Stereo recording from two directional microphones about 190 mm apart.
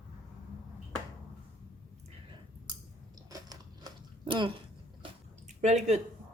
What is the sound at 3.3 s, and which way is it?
Biting, 20° right (ahead or behind).